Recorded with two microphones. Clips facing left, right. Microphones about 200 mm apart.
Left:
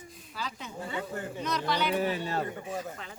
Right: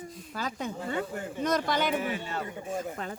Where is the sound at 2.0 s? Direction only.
35° left (ahead or behind).